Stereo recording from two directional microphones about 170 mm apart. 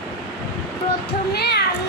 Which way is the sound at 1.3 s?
75° left (ahead or behind).